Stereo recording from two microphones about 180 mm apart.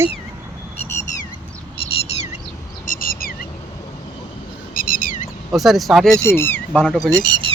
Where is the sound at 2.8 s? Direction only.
50° left (ahead or behind).